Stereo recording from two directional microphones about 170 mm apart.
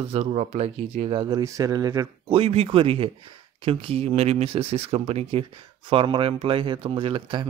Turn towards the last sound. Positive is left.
turn(degrees=-30)  # may be behind; listen again after turning